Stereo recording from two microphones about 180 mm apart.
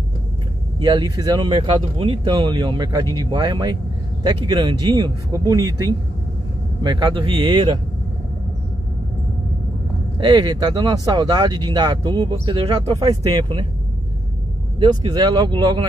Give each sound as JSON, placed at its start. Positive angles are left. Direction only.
{"t": 0.7, "sound": "speech", "side_deg": -25}
{"t": 10.1, "sound": "speech", "side_deg": -25}
{"t": 14.8, "sound": "speech", "side_deg": -25}